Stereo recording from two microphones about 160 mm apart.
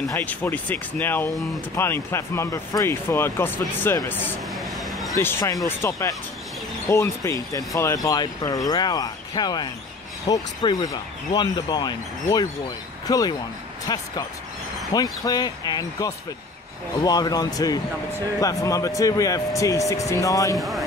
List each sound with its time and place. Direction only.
0.1 s speech: 10° left (ahead or behind)
4.6 s a sound: centre (ahead or behind)
5.1 s speech: 15° left (ahead or behind)
20.5 s speech: centre (ahead or behind)